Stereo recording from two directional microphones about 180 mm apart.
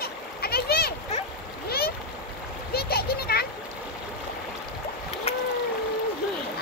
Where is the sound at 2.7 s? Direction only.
60° left (ahead or behind).